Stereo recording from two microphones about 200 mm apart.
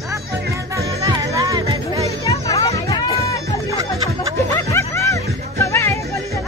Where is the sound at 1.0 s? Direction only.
20° right (ahead or behind).